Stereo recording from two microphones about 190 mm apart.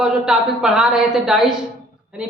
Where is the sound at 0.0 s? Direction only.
5° right (ahead or behind).